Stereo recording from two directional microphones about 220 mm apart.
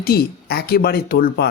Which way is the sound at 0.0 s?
45° left (ahead or behind).